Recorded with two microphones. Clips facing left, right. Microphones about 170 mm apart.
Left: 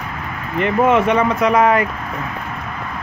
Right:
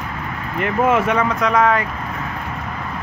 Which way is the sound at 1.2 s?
10° left (ahead or behind).